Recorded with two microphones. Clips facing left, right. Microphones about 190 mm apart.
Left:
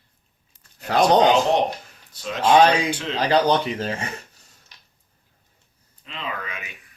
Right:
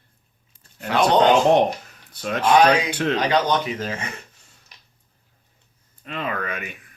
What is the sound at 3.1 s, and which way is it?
Speech, 30° left (ahead or behind).